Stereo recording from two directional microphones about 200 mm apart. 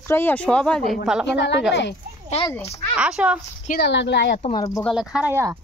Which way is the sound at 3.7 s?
55° left (ahead or behind).